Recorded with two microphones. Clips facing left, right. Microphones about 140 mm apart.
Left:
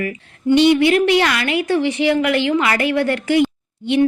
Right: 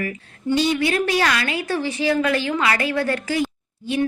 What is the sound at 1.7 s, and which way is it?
A woman's voice, 20° left (ahead or behind).